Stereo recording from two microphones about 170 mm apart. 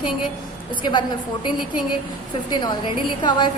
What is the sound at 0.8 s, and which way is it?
Speech, 25° left (ahead or behind).